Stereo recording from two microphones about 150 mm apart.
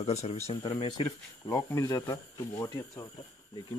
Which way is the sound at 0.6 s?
30° left (ahead or behind).